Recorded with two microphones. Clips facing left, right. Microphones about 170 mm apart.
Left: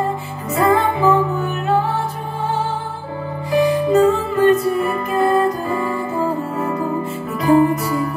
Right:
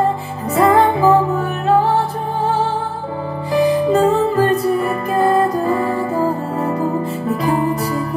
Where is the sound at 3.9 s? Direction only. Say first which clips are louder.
Right 1 dB; 35° right (ahead or behind).